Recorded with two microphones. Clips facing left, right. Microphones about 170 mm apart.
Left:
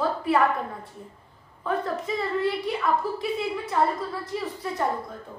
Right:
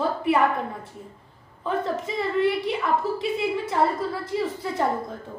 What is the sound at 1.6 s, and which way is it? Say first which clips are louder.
A woman's voice: right 1 dB; 25° right (ahead or behind).